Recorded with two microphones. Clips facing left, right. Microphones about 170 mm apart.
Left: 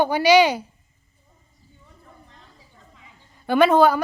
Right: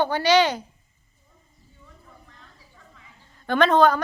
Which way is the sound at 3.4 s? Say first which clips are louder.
Left 2 dB; 10° left (ahead or behind).